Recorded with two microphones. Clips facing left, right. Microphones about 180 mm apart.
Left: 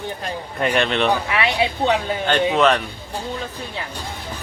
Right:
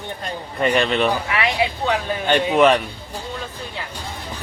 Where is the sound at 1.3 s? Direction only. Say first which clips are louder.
Left 1 dB; 25° left (ahead or behind).